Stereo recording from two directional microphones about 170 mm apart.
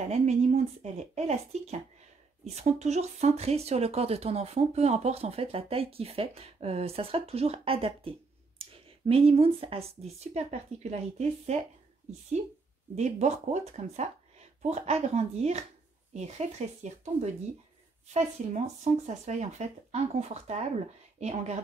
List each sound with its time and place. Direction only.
0.0 s speech: 40° right (ahead or behind)
12.9 s speech: 40° right (ahead or behind)